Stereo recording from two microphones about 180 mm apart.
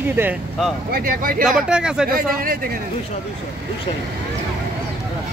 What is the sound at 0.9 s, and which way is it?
Speech, 55° right (ahead or behind).